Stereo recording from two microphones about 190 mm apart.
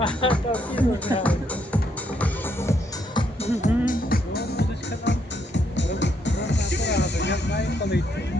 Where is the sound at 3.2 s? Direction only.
35° left (ahead or behind).